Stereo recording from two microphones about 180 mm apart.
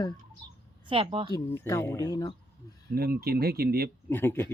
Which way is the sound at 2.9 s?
60° right (ahead or behind).